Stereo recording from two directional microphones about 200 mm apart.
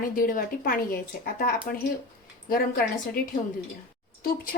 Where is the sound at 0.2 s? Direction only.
45° left (ahead or behind).